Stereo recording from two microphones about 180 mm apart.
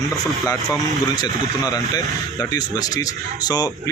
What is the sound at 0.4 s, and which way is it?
Speech, 20° left (ahead or behind).